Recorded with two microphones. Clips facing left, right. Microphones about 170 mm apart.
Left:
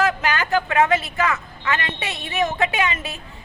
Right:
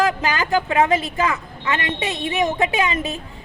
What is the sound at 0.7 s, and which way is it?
A woman's voice, 30° right (ahead or behind).